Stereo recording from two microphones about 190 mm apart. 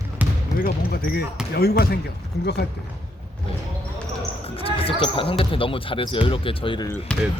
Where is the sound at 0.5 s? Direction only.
50° left (ahead or behind).